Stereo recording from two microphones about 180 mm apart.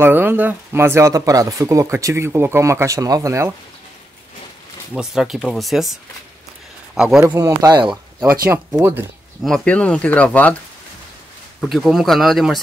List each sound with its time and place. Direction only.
0.0 s speech: 10° right (ahead or behind)
4.9 s speech: 5° right (ahead or behind)
7.0 s speech: 5° right (ahead or behind)
7.3 s speech: 20° right (ahead or behind)
7.9 s speech: 10° right (ahead or behind)
9.4 s speech: 5° left (ahead or behind)
11.6 s speech: centre (ahead or behind)